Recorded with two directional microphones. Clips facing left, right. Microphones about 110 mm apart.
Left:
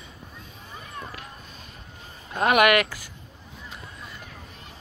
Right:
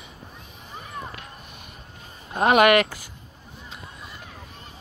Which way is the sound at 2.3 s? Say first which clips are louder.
Right 2 dB; 25° right (ahead or behind).